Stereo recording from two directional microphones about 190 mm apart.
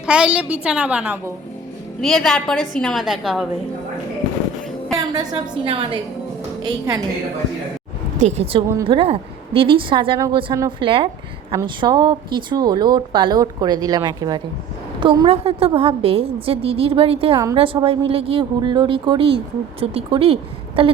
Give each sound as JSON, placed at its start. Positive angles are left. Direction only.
{"t": 0.0, "sound": "a woman's voice", "side_deg": -5}
{"t": 2.0, "sound": "a woman's voice", "side_deg": 0}
{"t": 4.9, "sound": "a woman's voice", "side_deg": -20}
{"t": 8.2, "sound": "speech", "side_deg": -35}